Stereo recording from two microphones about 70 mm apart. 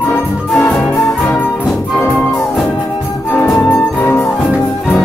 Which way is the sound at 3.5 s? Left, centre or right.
Left.